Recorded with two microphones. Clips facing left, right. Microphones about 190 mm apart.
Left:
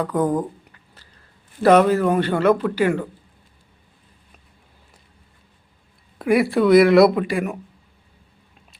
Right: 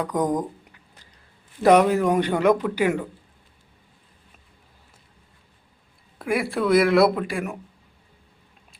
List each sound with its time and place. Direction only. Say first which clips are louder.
0.0 s speech: left 3 dB; 15° right (ahead or behind)
1.6 s speech: left 2 dB; 15° right (ahead or behind)
6.1 s speech: left 7 dB; centre (ahead or behind)